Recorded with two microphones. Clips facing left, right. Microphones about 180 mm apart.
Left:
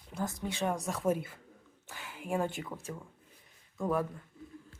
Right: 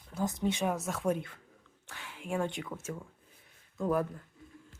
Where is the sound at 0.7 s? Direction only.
Centre (ahead or behind).